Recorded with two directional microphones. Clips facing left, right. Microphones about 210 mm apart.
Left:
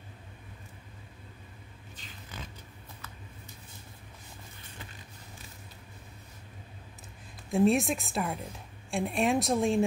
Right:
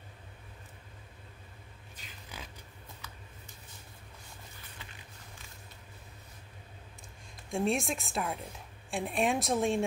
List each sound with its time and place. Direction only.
7.5 s speech: centre (ahead or behind)